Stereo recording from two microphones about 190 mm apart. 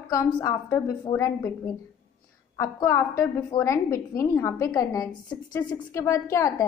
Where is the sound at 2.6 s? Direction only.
15° left (ahead or behind).